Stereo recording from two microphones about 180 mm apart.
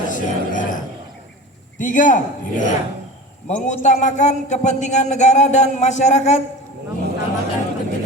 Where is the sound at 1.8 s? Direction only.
45° left (ahead or behind).